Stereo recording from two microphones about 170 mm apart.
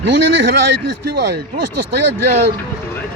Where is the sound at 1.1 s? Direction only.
75° right (ahead or behind).